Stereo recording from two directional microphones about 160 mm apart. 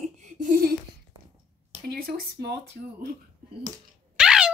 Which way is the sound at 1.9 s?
75° right (ahead or behind).